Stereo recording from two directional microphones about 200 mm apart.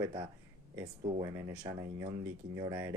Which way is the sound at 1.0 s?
35° right (ahead or behind).